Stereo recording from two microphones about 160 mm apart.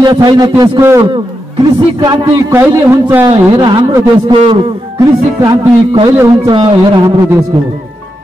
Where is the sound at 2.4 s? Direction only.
15° right (ahead or behind).